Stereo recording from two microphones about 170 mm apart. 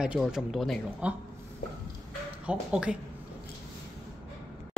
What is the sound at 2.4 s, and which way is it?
Speech, 5° right (ahead or behind).